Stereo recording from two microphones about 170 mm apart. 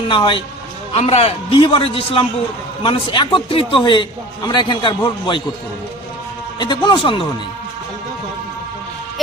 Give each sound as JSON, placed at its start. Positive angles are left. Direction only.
{"t": 0.1, "sound": "a man's voice", "side_deg": 30}
{"t": 6.6, "sound": "a man's voice", "side_deg": 25}